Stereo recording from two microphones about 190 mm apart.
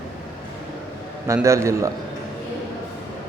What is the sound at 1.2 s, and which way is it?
Speech, 15° right (ahead or behind).